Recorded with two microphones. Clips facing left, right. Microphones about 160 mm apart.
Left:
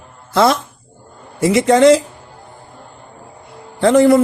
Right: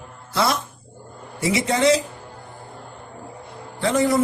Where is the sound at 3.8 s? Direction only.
60° left (ahead or behind).